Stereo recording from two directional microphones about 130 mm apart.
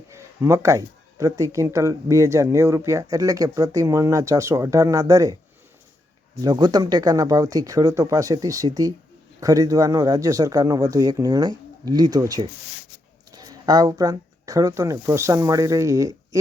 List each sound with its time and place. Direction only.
0.1 s speech: 20° right (ahead or behind)
6.4 s speech: 30° right (ahead or behind)